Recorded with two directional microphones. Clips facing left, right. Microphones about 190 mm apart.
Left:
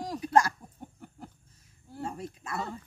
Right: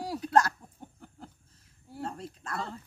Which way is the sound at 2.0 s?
10° left (ahead or behind).